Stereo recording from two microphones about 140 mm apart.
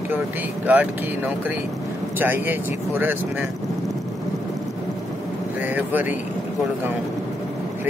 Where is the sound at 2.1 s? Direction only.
15° right (ahead or behind).